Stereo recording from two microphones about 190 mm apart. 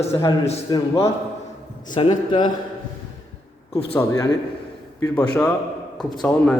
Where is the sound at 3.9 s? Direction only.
15° left (ahead or behind).